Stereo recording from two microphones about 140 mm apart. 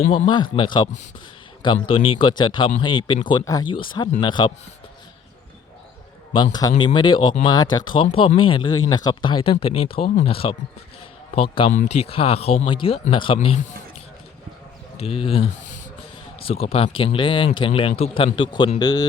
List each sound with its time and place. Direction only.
0.5 s speech: 35° left (ahead or behind)
6.3 s speech: 30° left (ahead or behind)
14.9 s speech: 45° left (ahead or behind); by 19.0 s 30° left (ahead or behind)